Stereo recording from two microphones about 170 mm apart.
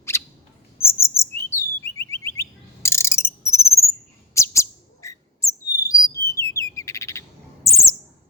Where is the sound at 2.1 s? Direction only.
15° left (ahead or behind).